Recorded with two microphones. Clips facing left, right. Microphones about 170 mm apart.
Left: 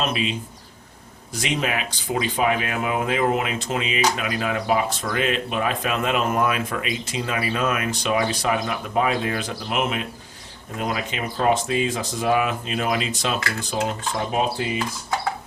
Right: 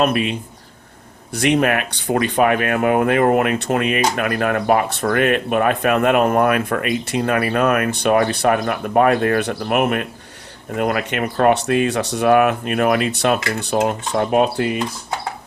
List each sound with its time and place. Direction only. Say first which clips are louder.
0.0 s speech: right 7 dB; 55° right (ahead or behind)